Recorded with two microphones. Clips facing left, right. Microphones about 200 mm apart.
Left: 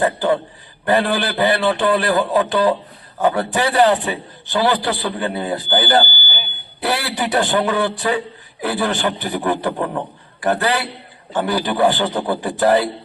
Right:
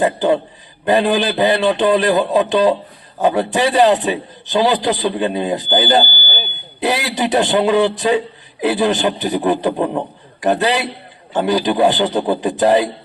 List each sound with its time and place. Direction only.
0.0 s a man's voice: 20° right (ahead or behind)
6.1 s smoke detector: 45° right (ahead or behind)
6.7 s a man's voice: 20° right (ahead or behind)